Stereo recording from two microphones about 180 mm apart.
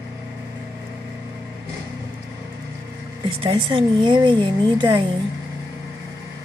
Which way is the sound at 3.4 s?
30° right (ahead or behind).